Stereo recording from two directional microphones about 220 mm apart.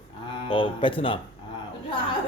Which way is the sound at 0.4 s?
20° left (ahead or behind).